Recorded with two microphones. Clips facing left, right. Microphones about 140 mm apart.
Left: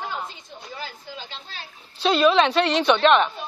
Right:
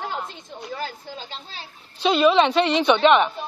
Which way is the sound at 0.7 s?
45° right (ahead or behind).